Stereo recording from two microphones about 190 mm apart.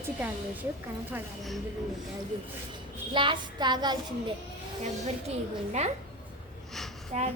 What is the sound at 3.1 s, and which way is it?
Child singing, 25° right (ahead or behind).